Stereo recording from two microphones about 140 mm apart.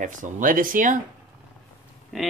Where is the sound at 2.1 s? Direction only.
Centre (ahead or behind).